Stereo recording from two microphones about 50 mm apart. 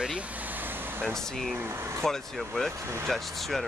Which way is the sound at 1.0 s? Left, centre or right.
Centre.